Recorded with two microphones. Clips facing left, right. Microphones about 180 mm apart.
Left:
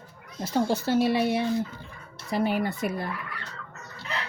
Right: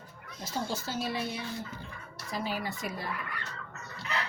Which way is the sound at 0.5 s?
65° left (ahead or behind).